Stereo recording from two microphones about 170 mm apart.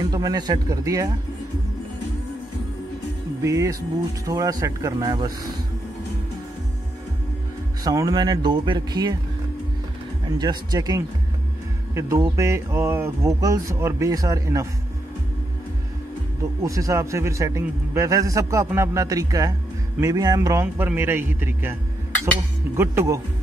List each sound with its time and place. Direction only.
0.1 s a man's voice: 20° right (ahead or behind)
3.4 s a man's voice: 20° right (ahead or behind)
7.8 s a man's voice: 20° right (ahead or behind)
10.4 s a man's voice: 25° right (ahead or behind)
16.6 s a man's voice: 20° right (ahead or behind)
22.8 s speech: 15° right (ahead or behind)